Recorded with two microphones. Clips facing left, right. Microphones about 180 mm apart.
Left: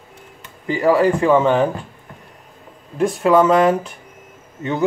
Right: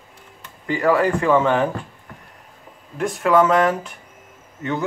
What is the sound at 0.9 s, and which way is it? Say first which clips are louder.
Speech: left 3 dB; 25° left (ahead or behind).